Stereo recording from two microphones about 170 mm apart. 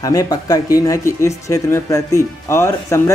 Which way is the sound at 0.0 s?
20° left (ahead or behind).